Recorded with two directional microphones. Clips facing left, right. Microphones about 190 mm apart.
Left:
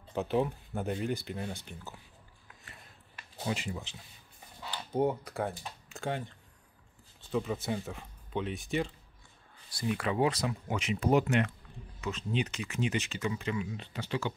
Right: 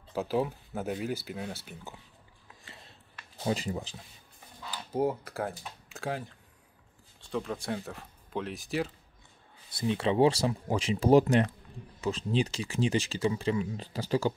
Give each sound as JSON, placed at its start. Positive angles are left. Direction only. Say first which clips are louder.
{"t": 0.1, "sound": "speech", "louder": "even", "side_deg": 0}
{"t": 2.6, "sound": "a sound", "louder": "right 3 dB", "side_deg": -25}
{"t": 3.4, "sound": "speech", "louder": "right 4 dB", "side_deg": -35}
{"t": 4.6, "sound": "speech", "louder": "even", "side_deg": -5}
{"t": 9.7, "sound": "speech", "louder": "right 4 dB", "side_deg": -25}